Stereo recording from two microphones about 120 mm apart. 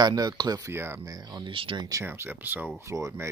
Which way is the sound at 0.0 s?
30° right (ahead or behind).